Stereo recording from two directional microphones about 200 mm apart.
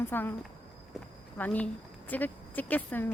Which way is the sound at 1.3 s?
10° left (ahead or behind).